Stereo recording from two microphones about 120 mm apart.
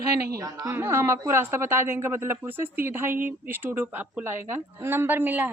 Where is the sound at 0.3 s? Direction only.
30° right (ahead or behind).